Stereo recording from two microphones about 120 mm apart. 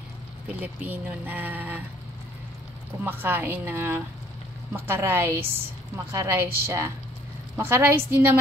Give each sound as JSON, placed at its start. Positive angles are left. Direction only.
{"t": 0.6, "sound": "speech", "side_deg": -15}
{"t": 3.0, "sound": "a woman's voice", "side_deg": -15}